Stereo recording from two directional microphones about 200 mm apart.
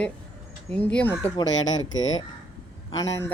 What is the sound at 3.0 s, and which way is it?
Speech, 15° left (ahead or behind).